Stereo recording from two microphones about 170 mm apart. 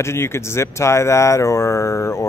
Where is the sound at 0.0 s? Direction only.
15° left (ahead or behind).